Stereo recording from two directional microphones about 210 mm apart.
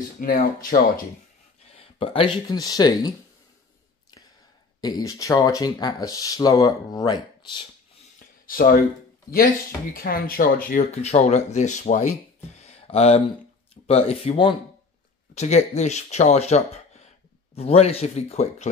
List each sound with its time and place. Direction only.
0.2 s speech: 40° left (ahead or behind)
1.8 s speech: 25° left (ahead or behind)
4.8 s speech: 20° left (ahead or behind)
8.5 s speech: 45° left (ahead or behind)
9.9 s speech: 45° left (ahead or behind)
10.7 s speech: 30° left (ahead or behind)